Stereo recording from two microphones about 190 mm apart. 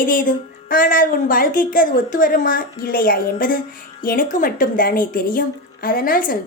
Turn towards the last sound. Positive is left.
turn(degrees=45)  # may be behind; listen again after turning